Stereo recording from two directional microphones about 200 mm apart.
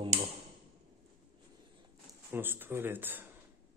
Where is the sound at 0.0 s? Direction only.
30° right (ahead or behind).